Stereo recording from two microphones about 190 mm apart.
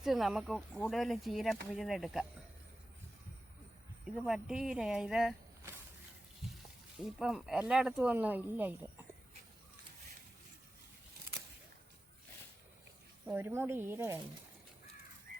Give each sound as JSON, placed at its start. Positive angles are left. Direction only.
{"t": 0.0, "sound": "speech", "side_deg": 0}
{"t": 4.0, "sound": "speech", "side_deg": 0}
{"t": 7.0, "sound": "speech", "side_deg": -5}
{"t": 13.2, "sound": "speech", "side_deg": -10}
{"t": 15.3, "sound": "crow", "side_deg": -55}